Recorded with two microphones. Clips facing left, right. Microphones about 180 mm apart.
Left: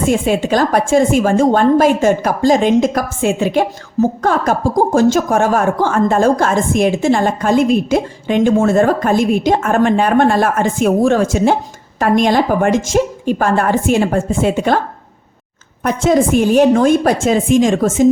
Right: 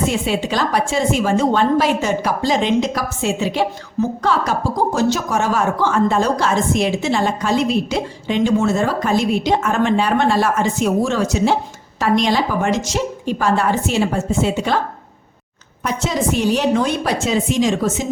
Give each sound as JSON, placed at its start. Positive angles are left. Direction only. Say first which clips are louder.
{"t": 0.1, "sound": "a woman's voice", "louder": "left 6 dB", "side_deg": 50}
{"t": 15.8, "sound": "a woman's voice", "louder": "left 8 dB", "side_deg": 50}